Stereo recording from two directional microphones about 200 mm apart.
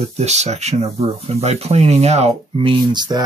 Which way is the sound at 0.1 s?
35° right (ahead or behind).